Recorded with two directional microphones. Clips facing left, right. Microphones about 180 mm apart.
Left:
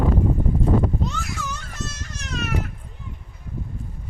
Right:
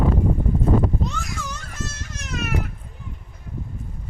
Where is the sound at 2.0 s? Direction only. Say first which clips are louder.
Even; centre (ahead or behind).